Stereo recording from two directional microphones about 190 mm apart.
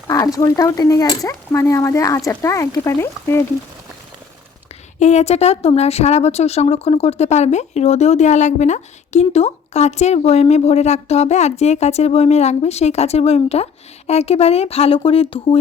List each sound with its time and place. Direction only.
0.1 s speech: 15° left (ahead or behind)
4.9 s a woman's voice: 35° left (ahead or behind)